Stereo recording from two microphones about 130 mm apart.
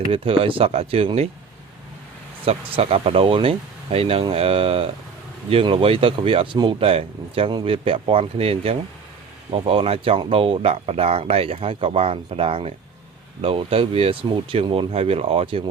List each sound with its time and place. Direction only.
0.1 s speech: 45° right (ahead or behind)
2.4 s speech: 50° right (ahead or behind)